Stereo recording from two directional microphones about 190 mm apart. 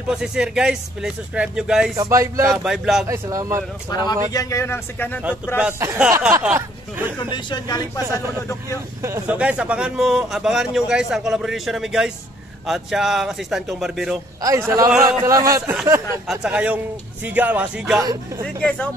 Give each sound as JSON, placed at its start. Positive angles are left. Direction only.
{"t": 0.1, "sound": "a man's voice", "side_deg": -5}
{"t": 2.0, "sound": "a man's voice", "side_deg": -15}
{"t": 2.6, "sound": "a man's voice", "side_deg": 0}
{"t": 3.1, "sound": "a man's voice", "side_deg": -15}
{"t": 3.9, "sound": "speech", "side_deg": 20}
{"t": 5.6, "sound": "a man's voice", "side_deg": -10}
{"t": 7.2, "sound": "speech", "side_deg": 25}
{"t": 9.0, "sound": "a man's voice", "side_deg": -10}
{"t": 15.0, "sound": "a man's voice", "side_deg": -15}